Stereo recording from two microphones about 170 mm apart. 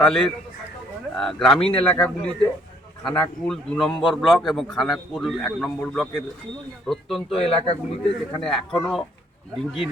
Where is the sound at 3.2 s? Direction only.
5° left (ahead or behind).